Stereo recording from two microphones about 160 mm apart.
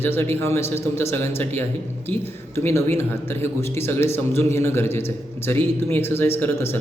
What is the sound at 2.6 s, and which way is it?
A man's voice, 15° left (ahead or behind).